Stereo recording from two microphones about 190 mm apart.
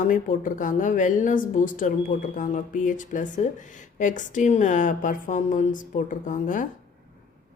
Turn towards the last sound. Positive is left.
turn(degrees=45)  # may be behind; listen again after turning